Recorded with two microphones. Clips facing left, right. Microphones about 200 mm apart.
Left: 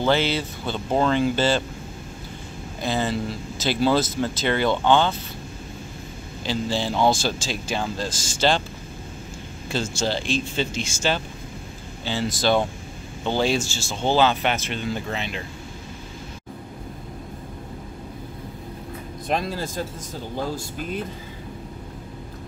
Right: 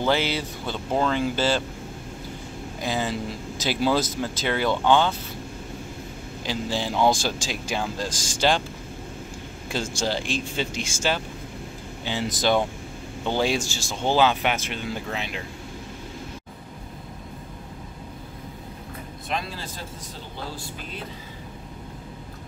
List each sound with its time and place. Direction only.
0.0 s speech: 10° right (ahead or behind)
2.8 s speech: 10° right (ahead or behind)
6.4 s speech: 15° right (ahead or behind)
9.7 s speech: 15° right (ahead or behind)
19.2 s speech: 45° left (ahead or behind)